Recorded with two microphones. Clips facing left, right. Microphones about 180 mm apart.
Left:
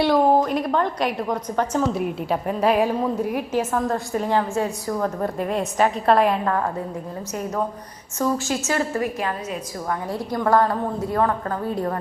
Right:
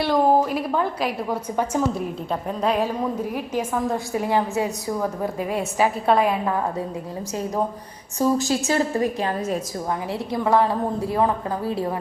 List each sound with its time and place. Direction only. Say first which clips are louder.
0.1 s a woman's voice: left 1 dB; 5° right (ahead or behind)
2.3 s a woman's voice: left 3 dB; 5° left (ahead or behind)
4.2 s a woman's voice: even; 15° right (ahead or behind)
8.4 s a woman's voice: right 2 dB; 35° right (ahead or behind)
10.3 s a woman's voice: even; 5° right (ahead or behind)